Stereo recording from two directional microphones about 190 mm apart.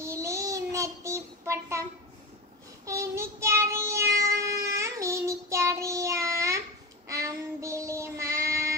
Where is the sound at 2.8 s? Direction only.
15° right (ahead or behind).